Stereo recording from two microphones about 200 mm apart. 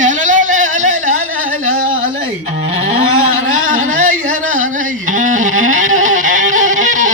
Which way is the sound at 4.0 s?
40° right (ahead or behind).